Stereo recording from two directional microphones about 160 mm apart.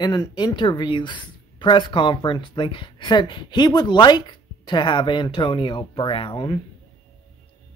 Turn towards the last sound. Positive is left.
turn(degrees=30)  # may be behind; listen again after turning